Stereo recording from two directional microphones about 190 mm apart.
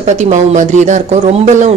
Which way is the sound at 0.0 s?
35° right (ahead or behind).